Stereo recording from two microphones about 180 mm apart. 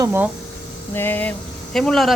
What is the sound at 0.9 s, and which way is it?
Speech, 10° left (ahead or behind).